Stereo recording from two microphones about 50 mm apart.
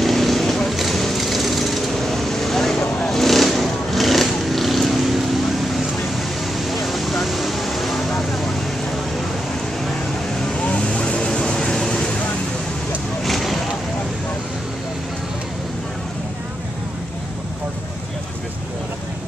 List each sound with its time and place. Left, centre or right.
0.0 s a sound: centre
3.0 s vehicle: centre
10.6 s vehicle: left
13.2 s vehicle: centre